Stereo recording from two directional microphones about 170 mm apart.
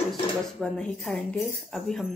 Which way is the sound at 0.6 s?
5° left (ahead or behind).